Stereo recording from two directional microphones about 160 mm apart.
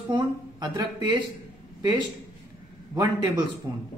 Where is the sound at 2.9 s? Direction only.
20° right (ahead or behind).